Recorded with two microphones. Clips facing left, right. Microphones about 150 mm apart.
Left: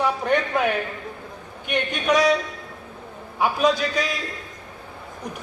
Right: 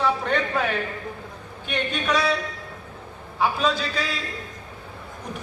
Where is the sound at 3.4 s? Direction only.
15° left (ahead or behind).